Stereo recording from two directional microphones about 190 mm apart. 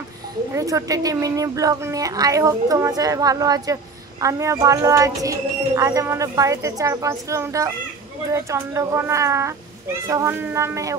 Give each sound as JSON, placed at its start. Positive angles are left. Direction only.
{"t": 0.6, "sound": "a woman's voice", "side_deg": -15}